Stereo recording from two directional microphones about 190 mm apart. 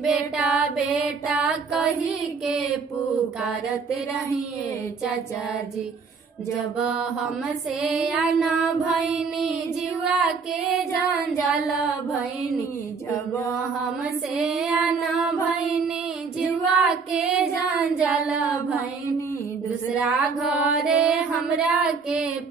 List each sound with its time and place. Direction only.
0.0 s music: centre (ahead or behind)
6.9 s child singing: 5° right (ahead or behind)
10.0 s child singing: 5° right (ahead or behind)
14.3 s child singing: centre (ahead or behind)
16.3 s child singing: centre (ahead or behind)
19.9 s child singing: centre (ahead or behind)